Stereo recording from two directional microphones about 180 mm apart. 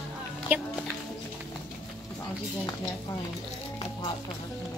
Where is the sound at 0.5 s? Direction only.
10° right (ahead or behind).